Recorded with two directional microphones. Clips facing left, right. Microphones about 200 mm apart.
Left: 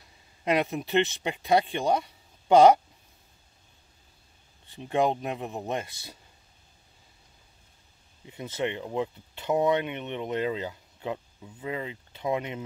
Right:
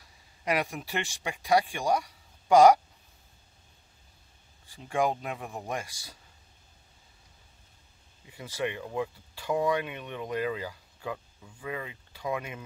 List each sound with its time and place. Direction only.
0.5 s speech: 20° left (ahead or behind)
4.6 s speech: 20° left (ahead or behind)
8.3 s speech: 20° left (ahead or behind)